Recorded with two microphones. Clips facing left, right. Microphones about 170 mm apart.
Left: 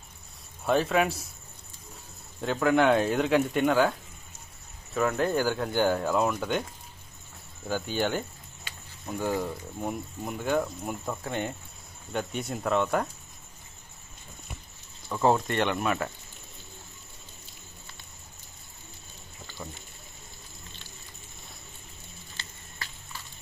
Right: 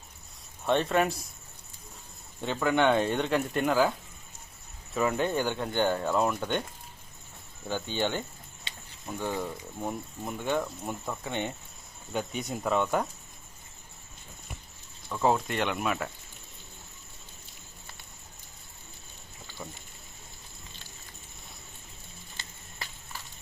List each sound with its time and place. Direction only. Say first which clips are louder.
0.6 s speech: left 1 dB; 5° left (ahead or behind)
2.4 s speech: left 2 dB; centre (ahead or behind)
4.9 s speech: left 2 dB; centre (ahead or behind)
7.7 s speech: left 2 dB; 10° left (ahead or behind)
15.1 s speech: left 2 dB; centre (ahead or behind)